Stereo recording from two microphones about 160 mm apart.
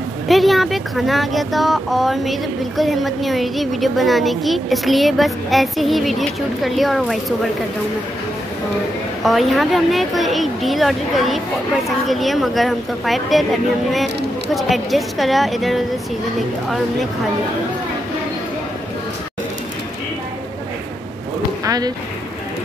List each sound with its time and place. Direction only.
0.3 s speech: centre (ahead or behind)
9.2 s speech: centre (ahead or behind)
14.5 s speech: centre (ahead or behind)
21.6 s boat: 25° right (ahead or behind)